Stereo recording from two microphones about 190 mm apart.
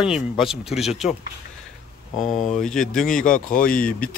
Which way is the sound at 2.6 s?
5° left (ahead or behind).